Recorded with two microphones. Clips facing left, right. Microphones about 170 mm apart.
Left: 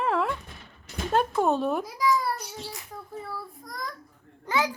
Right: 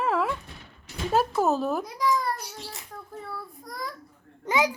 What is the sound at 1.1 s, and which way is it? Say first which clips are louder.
A child's voice: even; 5° right (ahead or behind).